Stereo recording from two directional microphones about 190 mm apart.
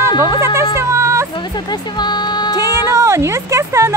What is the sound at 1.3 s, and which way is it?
Music, 20° left (ahead or behind).